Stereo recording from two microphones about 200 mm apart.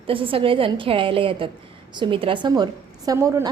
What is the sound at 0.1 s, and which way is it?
A woman's voice, 25° right (ahead or behind).